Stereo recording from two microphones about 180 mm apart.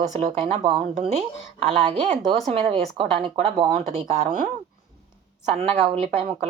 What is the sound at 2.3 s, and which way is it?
Speech, 30° right (ahead or behind).